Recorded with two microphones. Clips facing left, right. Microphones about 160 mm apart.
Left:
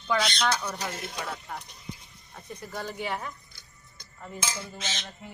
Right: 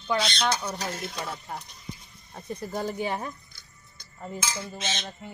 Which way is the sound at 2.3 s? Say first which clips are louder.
Right 6 dB; 30° right (ahead or behind).